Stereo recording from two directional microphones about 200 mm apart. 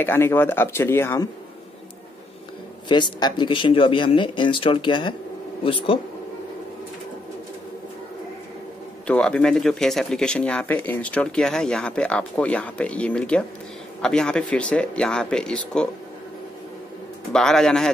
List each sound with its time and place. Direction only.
0.0 s speech: 10° left (ahead or behind)
2.9 s speech: 20° left (ahead or behind)
9.0 s speech: 5° left (ahead or behind)
17.3 s speech: 5° left (ahead or behind)